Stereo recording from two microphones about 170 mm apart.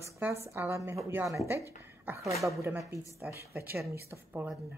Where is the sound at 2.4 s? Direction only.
15° right (ahead or behind).